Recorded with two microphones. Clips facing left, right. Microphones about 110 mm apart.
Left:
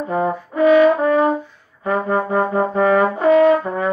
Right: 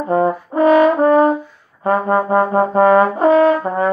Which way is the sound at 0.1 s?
40° right (ahead or behind).